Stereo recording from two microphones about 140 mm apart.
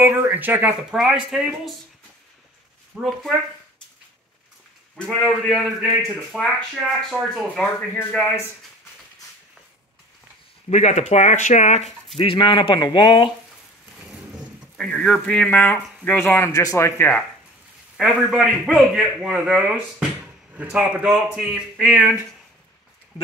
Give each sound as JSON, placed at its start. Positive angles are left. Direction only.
{"t": 0.0, "sound": "speech", "side_deg": -15}
{"t": 2.9, "sound": "a man's voice", "side_deg": -5}
{"t": 4.9, "sound": "a man's voice", "side_deg": 5}
{"t": 10.7, "sound": "speech", "side_deg": 50}
{"t": 12.2, "sound": "speech", "side_deg": 35}
{"t": 14.8, "sound": "speech", "side_deg": 5}
{"t": 17.9, "sound": "a man's voice", "side_deg": 0}